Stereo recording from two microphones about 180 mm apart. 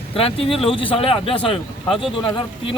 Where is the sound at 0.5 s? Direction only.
30° left (ahead or behind).